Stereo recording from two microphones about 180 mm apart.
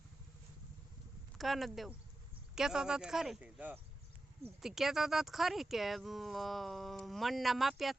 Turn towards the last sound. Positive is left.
turn(degrees=0)  # may be behind; listen again after turning